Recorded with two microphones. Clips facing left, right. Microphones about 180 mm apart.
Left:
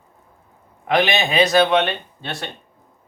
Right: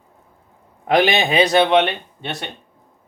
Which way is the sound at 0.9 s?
35° right (ahead or behind).